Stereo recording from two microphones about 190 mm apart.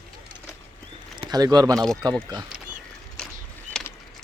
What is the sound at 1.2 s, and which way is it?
Speech, 20° right (ahead or behind).